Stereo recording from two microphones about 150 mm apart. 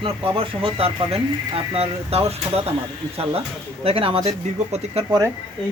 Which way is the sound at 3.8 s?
40° right (ahead or behind).